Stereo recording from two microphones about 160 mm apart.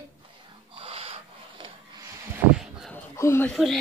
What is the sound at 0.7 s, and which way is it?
Snort, 35° right (ahead or behind).